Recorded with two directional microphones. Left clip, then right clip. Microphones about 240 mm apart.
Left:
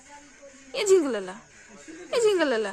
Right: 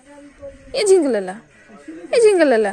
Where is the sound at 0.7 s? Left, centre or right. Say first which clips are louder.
Right 7 dB; centre.